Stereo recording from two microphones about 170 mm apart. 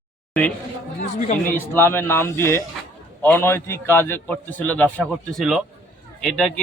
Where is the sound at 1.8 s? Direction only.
15° left (ahead or behind).